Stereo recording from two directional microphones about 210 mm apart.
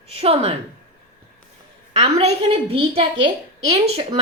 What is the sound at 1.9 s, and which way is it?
A woman's voice, 30° right (ahead or behind).